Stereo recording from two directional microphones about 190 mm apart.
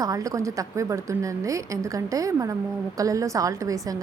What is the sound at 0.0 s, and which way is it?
A woman's voice, 20° right (ahead or behind).